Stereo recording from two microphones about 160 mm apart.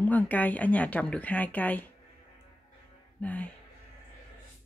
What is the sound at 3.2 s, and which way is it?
Speech, 10° left (ahead or behind).